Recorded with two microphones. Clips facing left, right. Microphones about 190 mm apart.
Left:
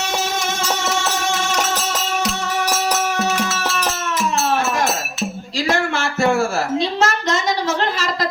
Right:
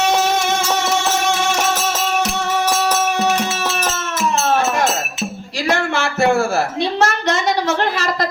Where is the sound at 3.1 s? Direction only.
15° right (ahead or behind).